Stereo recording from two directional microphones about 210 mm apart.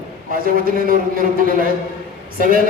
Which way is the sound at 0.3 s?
45° right (ahead or behind).